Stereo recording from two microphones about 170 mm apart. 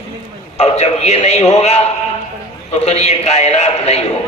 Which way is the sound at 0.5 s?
40° left (ahead or behind).